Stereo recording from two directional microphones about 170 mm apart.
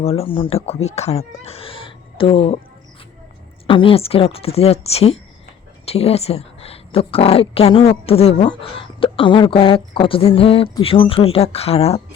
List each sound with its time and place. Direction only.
0.0 s a woman's voice: 35° left (ahead or behind)
3.7 s a woman's voice: 30° left (ahead or behind)